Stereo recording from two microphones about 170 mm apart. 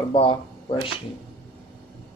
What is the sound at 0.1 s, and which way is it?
Speech, 30° left (ahead or behind).